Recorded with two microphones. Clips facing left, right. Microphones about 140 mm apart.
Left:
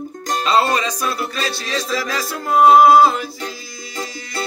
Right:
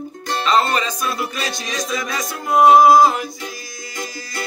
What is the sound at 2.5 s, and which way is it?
Music, 10° right (ahead or behind).